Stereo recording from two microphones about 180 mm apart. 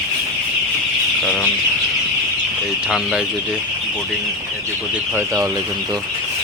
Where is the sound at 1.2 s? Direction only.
5° left (ahead or behind).